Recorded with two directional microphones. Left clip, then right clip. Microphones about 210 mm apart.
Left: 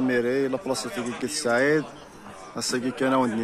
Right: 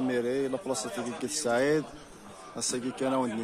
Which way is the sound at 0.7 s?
25° right (ahead or behind).